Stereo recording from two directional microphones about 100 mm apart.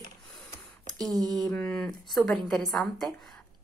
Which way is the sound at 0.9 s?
Centre (ahead or behind).